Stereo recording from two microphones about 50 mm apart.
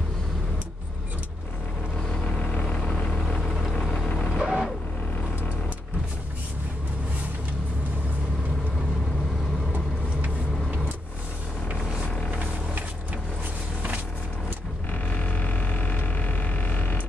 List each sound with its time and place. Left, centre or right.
2.2 s vehicle: left
4.1 s vehicle: left
4.4 s vehicle: centre
14.9 s a sound: left